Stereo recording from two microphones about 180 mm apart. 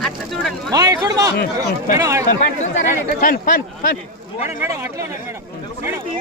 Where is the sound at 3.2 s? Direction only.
50° left (ahead or behind).